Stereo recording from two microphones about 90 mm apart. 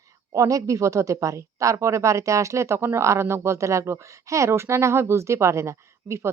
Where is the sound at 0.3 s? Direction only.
40° right (ahead or behind).